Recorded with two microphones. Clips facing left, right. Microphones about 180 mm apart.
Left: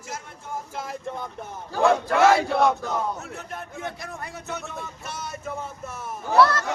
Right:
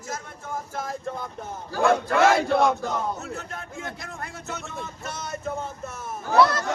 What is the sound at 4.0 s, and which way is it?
Speech, 15° left (ahead or behind).